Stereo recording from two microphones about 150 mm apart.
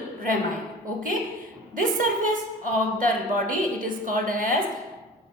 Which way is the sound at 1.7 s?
65° right (ahead or behind).